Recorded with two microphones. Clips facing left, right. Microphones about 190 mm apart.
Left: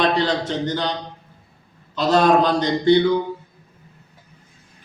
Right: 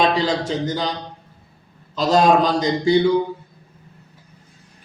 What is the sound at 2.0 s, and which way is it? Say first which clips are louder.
Speech: even; 10° right (ahead or behind).